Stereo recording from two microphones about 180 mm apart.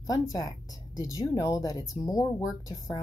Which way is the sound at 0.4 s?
20° left (ahead or behind).